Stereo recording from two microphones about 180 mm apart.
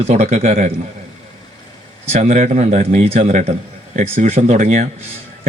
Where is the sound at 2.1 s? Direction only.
40° right (ahead or behind).